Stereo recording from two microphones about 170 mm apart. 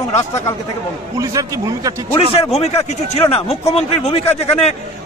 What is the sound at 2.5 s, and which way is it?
A man's voice, 40° left (ahead or behind).